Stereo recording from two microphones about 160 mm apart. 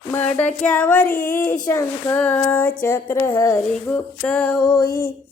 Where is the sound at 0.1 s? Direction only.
10° left (ahead or behind).